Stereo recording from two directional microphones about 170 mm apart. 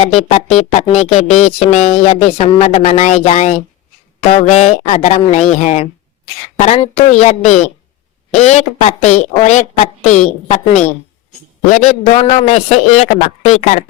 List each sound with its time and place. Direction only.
0.0 s a woman's voice: 40° left (ahead or behind)